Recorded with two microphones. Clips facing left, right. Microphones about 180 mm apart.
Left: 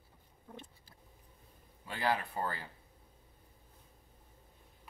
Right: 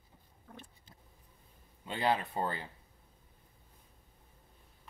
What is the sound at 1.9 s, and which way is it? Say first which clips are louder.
Speech: right 2 dB; 20° right (ahead or behind).